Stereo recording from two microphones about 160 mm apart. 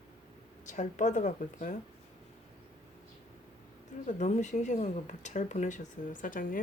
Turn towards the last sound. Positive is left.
turn(degrees=60)  # may be behind; listen again after turning